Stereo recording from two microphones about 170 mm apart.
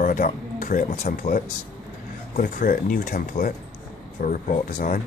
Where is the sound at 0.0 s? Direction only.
50° left (ahead or behind).